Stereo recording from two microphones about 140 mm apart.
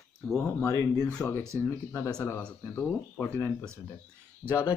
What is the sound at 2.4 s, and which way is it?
Speech, 10° left (ahead or behind).